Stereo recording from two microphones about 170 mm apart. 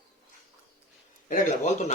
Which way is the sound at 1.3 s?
45° left (ahead or behind).